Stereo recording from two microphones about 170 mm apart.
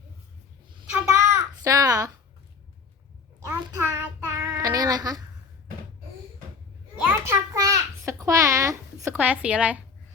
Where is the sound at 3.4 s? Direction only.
15° right (ahead or behind).